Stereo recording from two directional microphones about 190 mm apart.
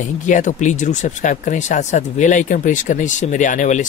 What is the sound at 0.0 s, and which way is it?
Speech, 40° left (ahead or behind).